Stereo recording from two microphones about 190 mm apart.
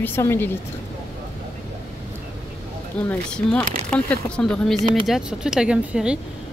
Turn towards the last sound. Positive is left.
turn(degrees=-5)  # may be behind; listen again after turning